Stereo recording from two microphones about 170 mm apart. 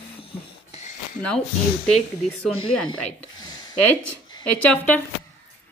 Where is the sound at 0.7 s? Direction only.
40° left (ahead or behind).